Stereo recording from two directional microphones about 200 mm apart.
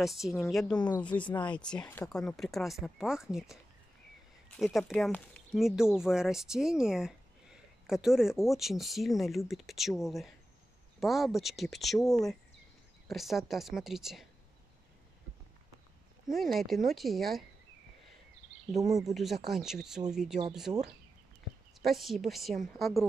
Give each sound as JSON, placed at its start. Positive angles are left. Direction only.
{"t": 0.0, "sound": "speech", "side_deg": 0}
{"t": 12.0, "sound": "speech", "side_deg": 15}
{"t": 13.1, "sound": "speech", "side_deg": 0}
{"t": 16.3, "sound": "speech", "side_deg": 0}
{"t": 18.8, "sound": "speech", "side_deg": -20}
{"t": 19.0, "sound": "speech", "side_deg": 0}
{"t": 21.8, "sound": "speech", "side_deg": 0}